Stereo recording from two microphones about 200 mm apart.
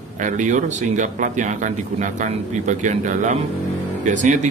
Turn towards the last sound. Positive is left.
turn(degrees=-35)  # may be behind; listen again after turning